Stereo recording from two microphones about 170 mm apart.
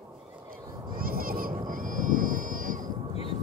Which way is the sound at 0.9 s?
60° right (ahead or behind).